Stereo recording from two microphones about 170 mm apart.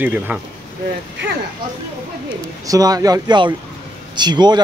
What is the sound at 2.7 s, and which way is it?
Speech, 20° right (ahead or behind).